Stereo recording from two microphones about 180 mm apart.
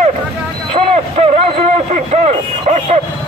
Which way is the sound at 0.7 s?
35° right (ahead or behind).